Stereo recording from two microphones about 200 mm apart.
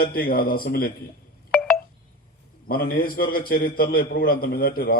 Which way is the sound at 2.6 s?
50° left (ahead or behind).